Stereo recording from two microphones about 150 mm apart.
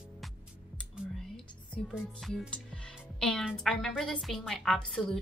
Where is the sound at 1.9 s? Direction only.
Centre (ahead or behind).